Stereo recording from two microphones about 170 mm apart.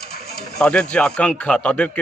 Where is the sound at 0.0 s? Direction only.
70° left (ahead or behind).